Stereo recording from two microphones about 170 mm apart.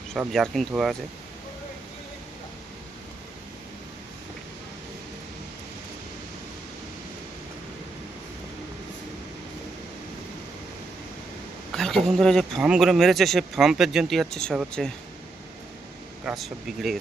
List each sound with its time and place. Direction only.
0.1 s speech: centre (ahead or behind)
11.7 s speech: centre (ahead or behind)
16.2 s speech: centre (ahead or behind)